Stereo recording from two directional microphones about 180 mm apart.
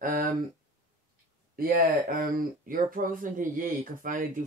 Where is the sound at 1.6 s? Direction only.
55° right (ahead or behind).